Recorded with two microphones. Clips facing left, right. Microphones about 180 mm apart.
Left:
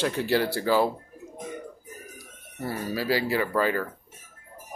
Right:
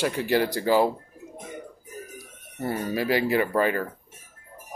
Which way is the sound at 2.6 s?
20° right (ahead or behind).